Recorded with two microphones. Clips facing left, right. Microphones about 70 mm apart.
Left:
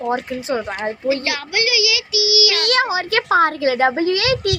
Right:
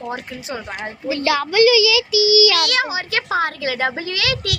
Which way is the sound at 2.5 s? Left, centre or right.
Left.